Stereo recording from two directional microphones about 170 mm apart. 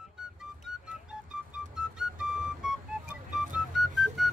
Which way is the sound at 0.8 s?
5° right (ahead or behind).